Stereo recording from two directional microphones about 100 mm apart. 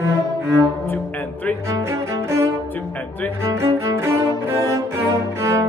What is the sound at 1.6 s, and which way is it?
Music, 25° right (ahead or behind).